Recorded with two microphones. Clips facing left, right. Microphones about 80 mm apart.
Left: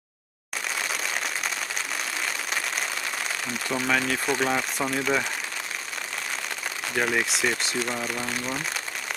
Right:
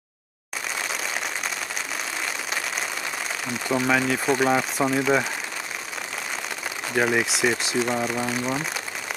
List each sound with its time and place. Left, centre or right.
3.6 s speech: centre
7.0 s speech: centre
8.0 s speech: centre